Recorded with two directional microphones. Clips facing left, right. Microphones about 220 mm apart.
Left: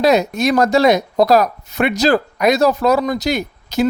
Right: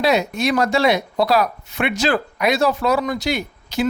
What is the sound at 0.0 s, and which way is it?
Speech, 40° left (ahead or behind).